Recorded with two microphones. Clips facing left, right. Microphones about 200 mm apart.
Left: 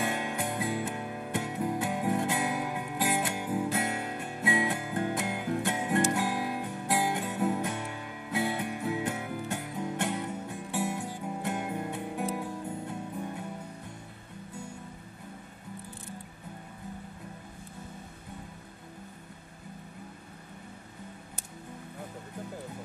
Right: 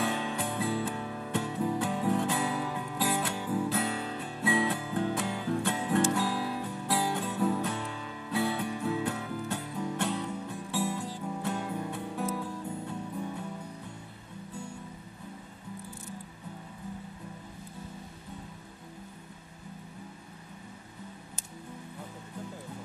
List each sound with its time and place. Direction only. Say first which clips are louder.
0.0 s music: even; 15° left (ahead or behind)